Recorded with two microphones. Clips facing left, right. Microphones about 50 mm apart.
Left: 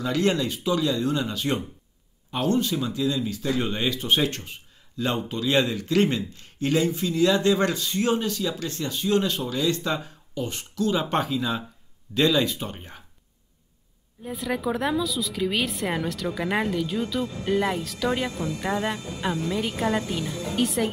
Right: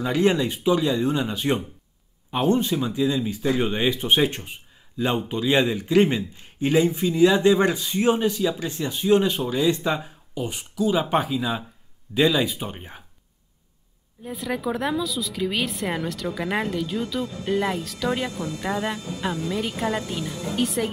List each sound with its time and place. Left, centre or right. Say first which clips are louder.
0.0 s speech: right 3 dB; centre
14.2 s a woman's voice: even; centre